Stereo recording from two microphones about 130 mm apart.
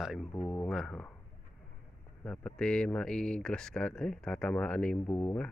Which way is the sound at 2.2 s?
5° left (ahead or behind).